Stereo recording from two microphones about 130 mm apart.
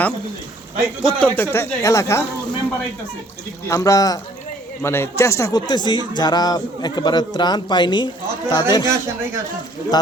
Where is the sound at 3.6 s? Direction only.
25° left (ahead or behind).